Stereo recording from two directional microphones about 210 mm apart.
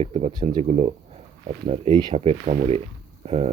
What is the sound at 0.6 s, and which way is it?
Speech, 30° right (ahead or behind).